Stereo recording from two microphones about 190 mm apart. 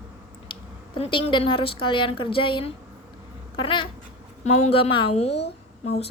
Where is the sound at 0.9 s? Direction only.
30° left (ahead or behind).